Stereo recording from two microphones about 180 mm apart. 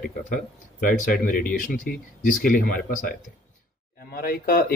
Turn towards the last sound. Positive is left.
turn(degrees=55)  # may be behind; listen again after turning